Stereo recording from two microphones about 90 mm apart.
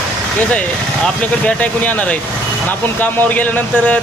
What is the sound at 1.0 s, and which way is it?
Speech, 15° left (ahead or behind).